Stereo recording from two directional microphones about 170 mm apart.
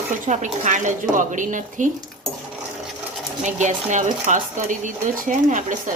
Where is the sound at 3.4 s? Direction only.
45° right (ahead or behind).